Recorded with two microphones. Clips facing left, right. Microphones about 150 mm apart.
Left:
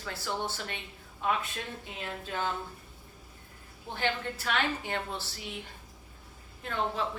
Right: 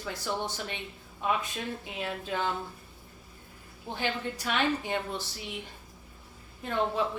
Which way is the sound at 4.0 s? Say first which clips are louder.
Even; 15° right (ahead or behind).